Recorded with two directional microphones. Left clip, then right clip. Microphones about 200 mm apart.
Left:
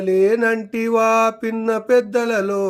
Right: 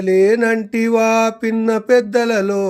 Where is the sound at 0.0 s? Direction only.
35° right (ahead or behind).